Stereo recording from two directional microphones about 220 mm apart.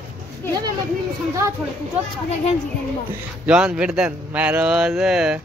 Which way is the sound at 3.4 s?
5° right (ahead or behind).